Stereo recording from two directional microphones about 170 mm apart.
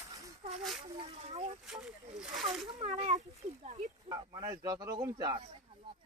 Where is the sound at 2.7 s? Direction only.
40° right (ahead or behind).